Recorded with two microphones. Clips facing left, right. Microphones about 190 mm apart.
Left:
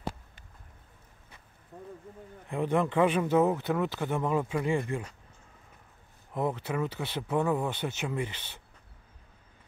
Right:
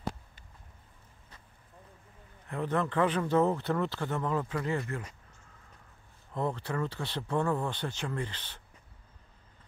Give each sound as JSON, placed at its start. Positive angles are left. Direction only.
{"t": 1.7, "sound": "a sound", "side_deg": 65}
{"t": 2.4, "sound": "speech", "side_deg": 15}
{"t": 6.3, "sound": "speech", "side_deg": 15}